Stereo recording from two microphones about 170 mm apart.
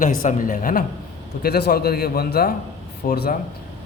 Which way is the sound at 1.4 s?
65° left (ahead or behind).